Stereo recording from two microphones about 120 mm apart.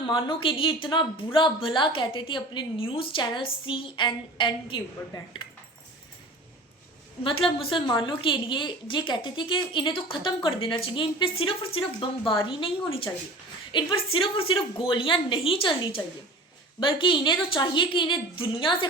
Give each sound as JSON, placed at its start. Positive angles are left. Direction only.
{"t": 0.0, "sound": "a woman's voice", "side_deg": 40}
{"t": 7.3, "sound": "a woman's voice", "side_deg": 50}